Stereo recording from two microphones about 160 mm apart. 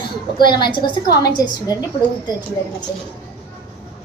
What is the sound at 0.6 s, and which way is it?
Speech, 80° left.